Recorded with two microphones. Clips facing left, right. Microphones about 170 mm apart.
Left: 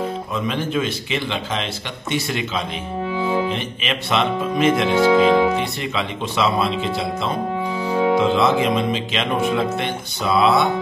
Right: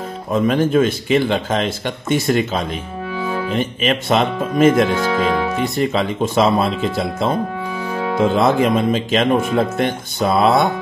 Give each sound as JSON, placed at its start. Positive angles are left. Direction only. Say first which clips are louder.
{"t": 0.3, "sound": "speech", "louder": "right 12 dB", "side_deg": -50}
{"t": 3.1, "sound": "music", "louder": "left 2 dB", "side_deg": 20}
{"t": 3.5, "sound": "speech", "louder": "right 7 dB", "side_deg": -45}
{"t": 4.9, "sound": "speech", "louder": "left 4 dB", "side_deg": 20}
{"t": 5.6, "sound": "speech", "louder": "right 6 dB", "side_deg": -45}
{"t": 7.8, "sound": "music", "louder": "left 5 dB", "side_deg": 20}
{"t": 8.2, "sound": "speech", "louder": "right 2 dB", "side_deg": -50}